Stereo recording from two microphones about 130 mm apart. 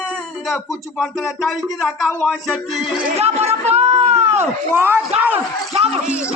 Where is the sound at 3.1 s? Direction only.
55° right (ahead or behind).